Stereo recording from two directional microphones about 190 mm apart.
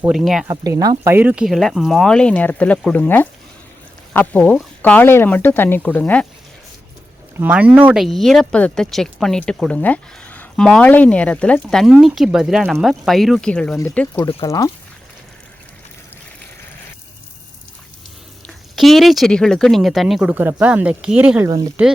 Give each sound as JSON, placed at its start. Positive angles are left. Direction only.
{"t": 0.1, "sound": "speech", "side_deg": -5}
{"t": 0.4, "sound": "speech", "side_deg": -20}
{"t": 7.3, "sound": "speech", "side_deg": -10}
{"t": 18.4, "sound": "speech", "side_deg": 0}